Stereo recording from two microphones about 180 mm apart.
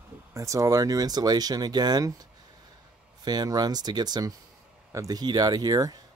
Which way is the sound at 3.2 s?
20° right (ahead or behind).